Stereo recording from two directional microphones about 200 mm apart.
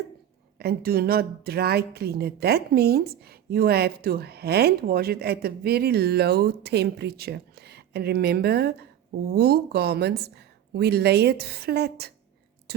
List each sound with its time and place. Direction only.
0.6 s speech: 50° right (ahead or behind)